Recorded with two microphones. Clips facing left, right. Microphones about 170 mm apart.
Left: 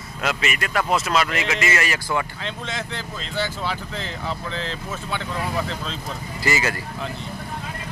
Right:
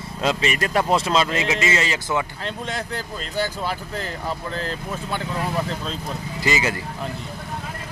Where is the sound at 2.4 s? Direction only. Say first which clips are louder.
Right 2 dB; 40° right (ahead or behind).